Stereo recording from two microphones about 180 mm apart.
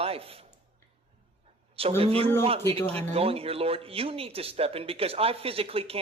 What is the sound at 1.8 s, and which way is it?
Speech, 35° right (ahead or behind).